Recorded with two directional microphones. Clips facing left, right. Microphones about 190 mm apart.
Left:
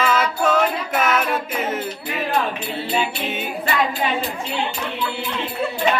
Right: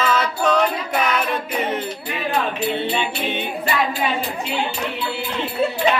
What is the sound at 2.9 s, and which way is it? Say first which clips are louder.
Music: even; 5° left (ahead or behind).